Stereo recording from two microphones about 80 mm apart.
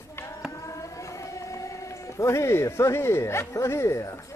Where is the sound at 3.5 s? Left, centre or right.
Left.